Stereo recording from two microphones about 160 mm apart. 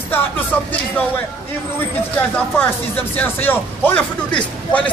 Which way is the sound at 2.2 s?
10° left (ahead or behind).